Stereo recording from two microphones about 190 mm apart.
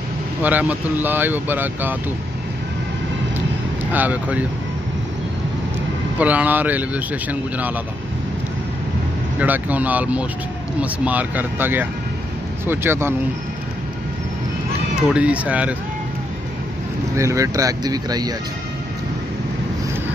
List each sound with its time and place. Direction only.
0.4 s speech: 10° right (ahead or behind)
3.9 s speech: 10° right (ahead or behind)
6.1 s speech: 10° right (ahead or behind)
9.4 s speech: 10° right (ahead or behind)
15.1 s speech: 5° right (ahead or behind)
17.2 s speech: 15° right (ahead or behind)